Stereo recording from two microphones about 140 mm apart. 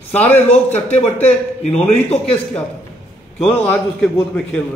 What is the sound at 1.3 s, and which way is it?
A man's voice, 50° left (ahead or behind).